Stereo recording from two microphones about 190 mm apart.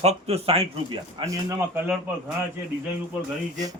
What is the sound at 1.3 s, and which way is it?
Speech, 15° right (ahead or behind).